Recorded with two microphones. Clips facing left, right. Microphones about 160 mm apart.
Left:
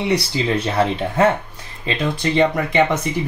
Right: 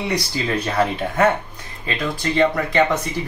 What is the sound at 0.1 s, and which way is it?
Speech, 25° left (ahead or behind).